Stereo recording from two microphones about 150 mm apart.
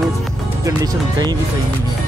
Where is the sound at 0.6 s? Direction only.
25° right (ahead or behind).